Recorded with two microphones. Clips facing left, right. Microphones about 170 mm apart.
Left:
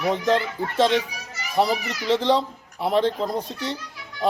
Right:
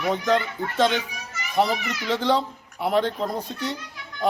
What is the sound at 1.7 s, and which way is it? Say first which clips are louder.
Speech: left 1 dB; 35° left (ahead or behind).